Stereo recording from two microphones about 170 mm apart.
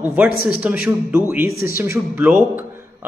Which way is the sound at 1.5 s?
60° left (ahead or behind).